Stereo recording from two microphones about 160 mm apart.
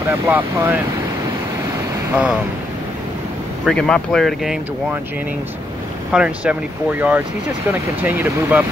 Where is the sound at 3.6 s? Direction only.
5° left (ahead or behind).